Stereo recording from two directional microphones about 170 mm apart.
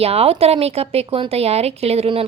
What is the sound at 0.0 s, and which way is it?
Speech, 35° right (ahead or behind).